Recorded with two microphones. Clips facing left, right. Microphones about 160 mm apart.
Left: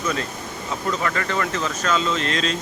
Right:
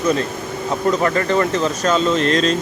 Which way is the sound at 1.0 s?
35° right (ahead or behind).